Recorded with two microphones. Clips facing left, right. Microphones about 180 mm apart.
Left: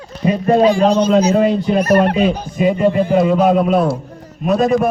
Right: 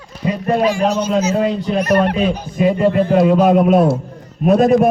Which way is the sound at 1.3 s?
20° left (ahead or behind).